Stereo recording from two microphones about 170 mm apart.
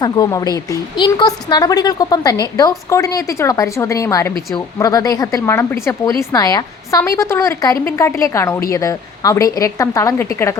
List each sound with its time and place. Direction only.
0.0 s a woman's voice: 20° left (ahead or behind)